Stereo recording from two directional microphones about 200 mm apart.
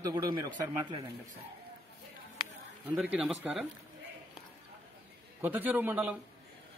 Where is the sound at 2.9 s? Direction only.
5° right (ahead or behind).